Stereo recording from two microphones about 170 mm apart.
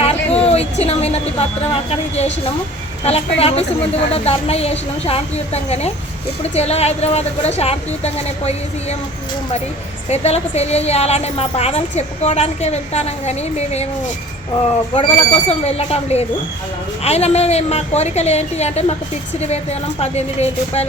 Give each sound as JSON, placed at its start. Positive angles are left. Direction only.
{"t": 0.0, "sound": "a sound", "side_deg": 35}
{"t": 1.9, "sound": "a woman's voice", "side_deg": 40}
{"t": 10.1, "sound": "a woman's voice", "side_deg": 40}
{"t": 14.9, "sound": "a woman's voice", "side_deg": 35}
{"t": 20.0, "sound": "a woman's voice", "side_deg": 40}